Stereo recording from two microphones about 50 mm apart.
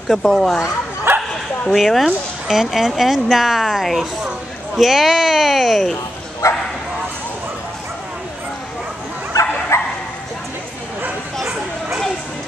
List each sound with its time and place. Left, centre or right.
0.1 s speech: centre
1.1 s bow-wow: right
1.7 s speech: centre
6.4 s bow-wow: left
9.7 s bow-wow: left